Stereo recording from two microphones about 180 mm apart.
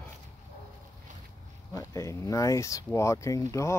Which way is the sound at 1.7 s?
20° left (ahead or behind).